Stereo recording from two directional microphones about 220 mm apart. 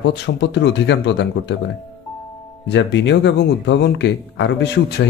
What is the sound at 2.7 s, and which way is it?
Speech, 55° left (ahead or behind).